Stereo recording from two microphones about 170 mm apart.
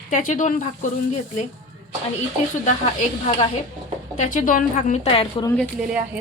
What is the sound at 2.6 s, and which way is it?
A woman's voice, 40° left (ahead or behind).